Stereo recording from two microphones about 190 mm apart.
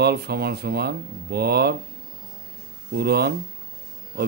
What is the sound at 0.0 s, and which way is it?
Speech, 60° right (ahead or behind).